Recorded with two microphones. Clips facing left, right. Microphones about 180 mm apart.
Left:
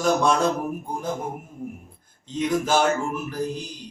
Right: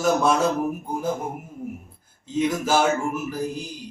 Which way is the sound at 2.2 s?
5° right (ahead or behind).